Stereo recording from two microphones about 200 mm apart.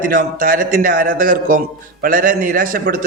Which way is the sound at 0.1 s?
45° right (ahead or behind).